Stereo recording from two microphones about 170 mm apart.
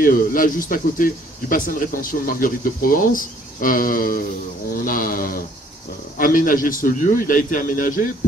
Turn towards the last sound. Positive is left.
turn(degrees=55)  # may be behind; listen again after turning